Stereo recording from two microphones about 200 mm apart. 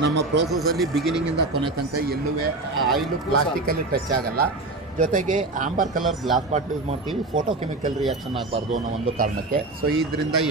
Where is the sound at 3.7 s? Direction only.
50° right (ahead or behind).